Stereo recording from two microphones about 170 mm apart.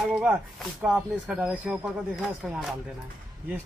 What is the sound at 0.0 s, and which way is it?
Speech, 5° right (ahead or behind).